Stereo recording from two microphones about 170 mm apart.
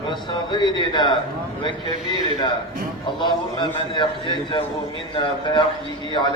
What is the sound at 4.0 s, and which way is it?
A man's voice, 30° left (ahead or behind).